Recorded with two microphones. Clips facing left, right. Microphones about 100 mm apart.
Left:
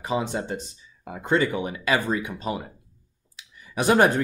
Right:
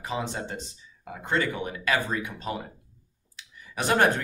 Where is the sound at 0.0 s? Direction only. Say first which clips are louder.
Left 5 dB; 15° left (ahead or behind).